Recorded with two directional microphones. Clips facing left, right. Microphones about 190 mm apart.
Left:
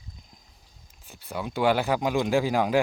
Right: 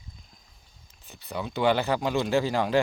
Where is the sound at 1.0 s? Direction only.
10° left (ahead or behind).